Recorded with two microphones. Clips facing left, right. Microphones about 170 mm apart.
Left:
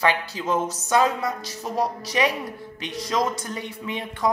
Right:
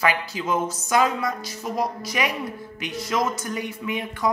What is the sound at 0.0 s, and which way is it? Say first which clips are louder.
A woman's voice: even; 35° left (ahead or behind).